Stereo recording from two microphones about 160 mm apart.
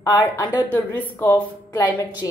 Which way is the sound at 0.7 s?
10° left (ahead or behind).